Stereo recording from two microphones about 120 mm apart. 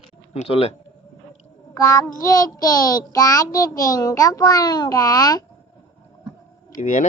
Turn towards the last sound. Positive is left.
turn(degrees=90)